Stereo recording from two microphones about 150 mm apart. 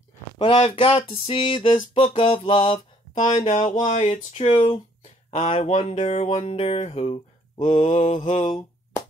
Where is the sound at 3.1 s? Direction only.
50° left (ahead or behind).